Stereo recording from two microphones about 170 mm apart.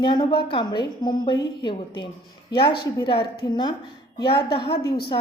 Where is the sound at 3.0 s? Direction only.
30° left (ahead or behind).